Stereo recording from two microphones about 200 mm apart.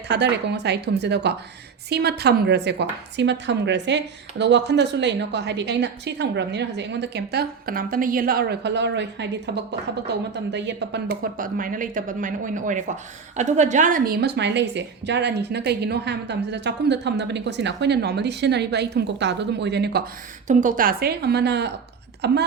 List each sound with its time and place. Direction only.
0.1 s a woman's voice: 60° right (ahead or behind)
20.5 s a woman's voice: 40° right (ahead or behind); by 22.4 s 55° right (ahead or behind)